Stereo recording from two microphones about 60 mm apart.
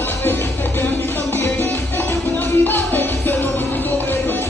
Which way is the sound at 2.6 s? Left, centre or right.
Left.